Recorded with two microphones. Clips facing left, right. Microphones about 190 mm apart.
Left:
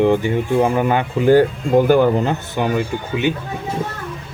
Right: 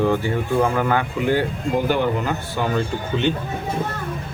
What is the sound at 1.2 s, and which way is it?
Speech, 40° left (ahead or behind).